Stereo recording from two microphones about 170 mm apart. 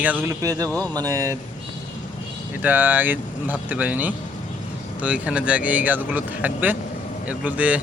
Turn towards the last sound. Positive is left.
turn(degrees=-10)  # may be behind; listen again after turning